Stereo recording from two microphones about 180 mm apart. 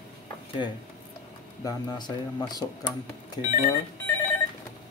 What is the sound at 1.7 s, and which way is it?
Speech, 25° left (ahead or behind).